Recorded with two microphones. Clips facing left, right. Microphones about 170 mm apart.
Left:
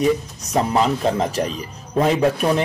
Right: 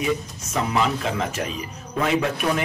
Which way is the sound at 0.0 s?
35° left (ahead or behind).